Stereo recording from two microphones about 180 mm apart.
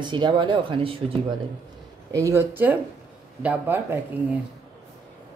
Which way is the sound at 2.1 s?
20° right (ahead or behind).